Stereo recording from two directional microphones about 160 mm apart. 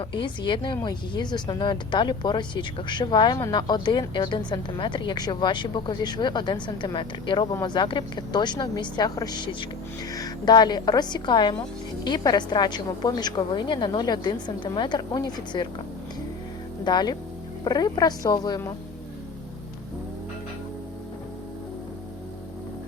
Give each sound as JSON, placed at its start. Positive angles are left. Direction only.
{"t": 0.0, "sound": "speech", "side_deg": 30}
{"t": 16.8, "sound": "speech", "side_deg": 25}